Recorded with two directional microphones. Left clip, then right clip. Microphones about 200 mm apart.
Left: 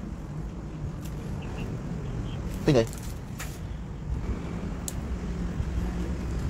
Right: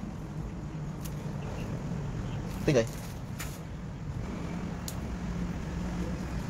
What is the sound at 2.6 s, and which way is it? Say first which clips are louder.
Speech: left 3 dB; 30° left (ahead or behind).